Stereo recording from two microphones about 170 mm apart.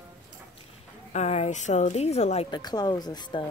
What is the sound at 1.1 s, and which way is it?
A woman's voice, 40° left (ahead or behind).